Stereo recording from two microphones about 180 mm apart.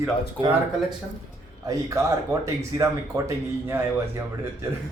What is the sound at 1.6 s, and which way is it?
Speech, 20° right (ahead or behind).